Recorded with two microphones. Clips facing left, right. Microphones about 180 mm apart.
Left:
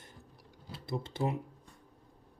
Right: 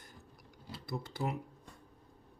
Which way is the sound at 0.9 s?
25° left (ahead or behind).